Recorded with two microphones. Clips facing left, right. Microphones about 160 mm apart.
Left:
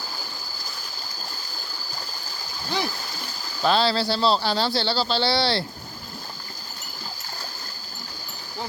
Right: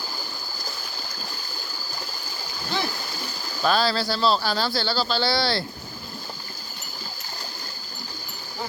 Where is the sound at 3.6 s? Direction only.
25° left (ahead or behind).